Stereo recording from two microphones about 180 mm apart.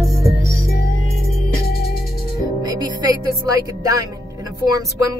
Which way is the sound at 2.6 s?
20° right (ahead or behind).